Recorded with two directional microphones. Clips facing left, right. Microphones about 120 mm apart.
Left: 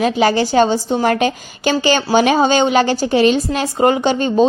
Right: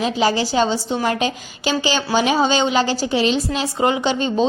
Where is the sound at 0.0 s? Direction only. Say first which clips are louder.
Left 4 dB; 55° left (ahead or behind).